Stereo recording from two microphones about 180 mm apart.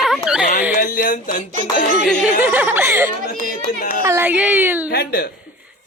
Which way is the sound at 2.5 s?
10° right (ahead or behind).